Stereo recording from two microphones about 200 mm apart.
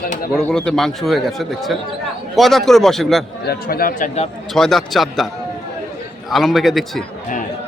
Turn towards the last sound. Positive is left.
turn(degrees=0)  # may be behind; listen again after turning